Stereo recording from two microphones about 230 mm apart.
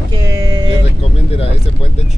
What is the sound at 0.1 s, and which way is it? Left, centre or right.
Vehicle, centre.